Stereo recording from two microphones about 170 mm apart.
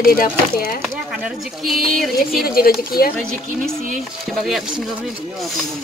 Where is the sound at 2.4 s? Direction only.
60° left (ahead or behind).